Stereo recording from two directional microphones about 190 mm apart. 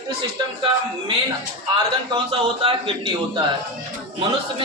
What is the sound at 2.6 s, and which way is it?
Speech, 30° right (ahead or behind).